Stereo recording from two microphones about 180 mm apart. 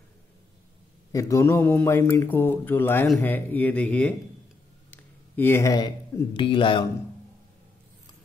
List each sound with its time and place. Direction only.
1.1 s speech: 15° left (ahead or behind)